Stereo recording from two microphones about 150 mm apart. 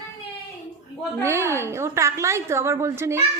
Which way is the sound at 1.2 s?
20° right (ahead or behind).